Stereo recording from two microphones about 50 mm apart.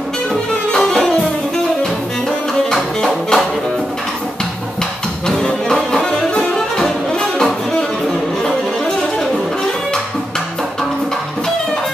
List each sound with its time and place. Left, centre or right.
0.7 s music: centre
2.7 s music: centre
5.3 s music: centre